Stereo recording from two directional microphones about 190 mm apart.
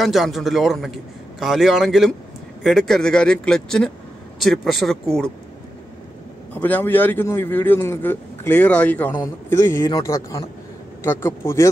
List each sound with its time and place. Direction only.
0.0 s a man's voice: centre (ahead or behind)
6.5 s a man's voice: 10° left (ahead or behind)